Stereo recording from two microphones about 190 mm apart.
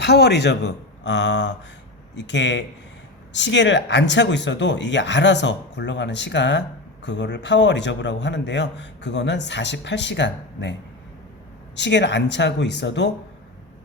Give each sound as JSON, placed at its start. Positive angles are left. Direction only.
{"t": 0.0, "sound": "speech", "side_deg": 60}
{"t": 11.8, "sound": "speech", "side_deg": 65}